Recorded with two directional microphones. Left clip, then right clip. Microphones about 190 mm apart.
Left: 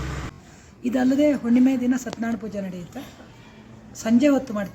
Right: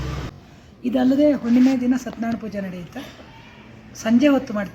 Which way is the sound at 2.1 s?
10° left (ahead or behind).